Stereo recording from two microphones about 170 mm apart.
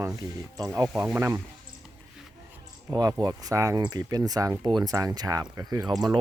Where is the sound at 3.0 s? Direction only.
20° right (ahead or behind).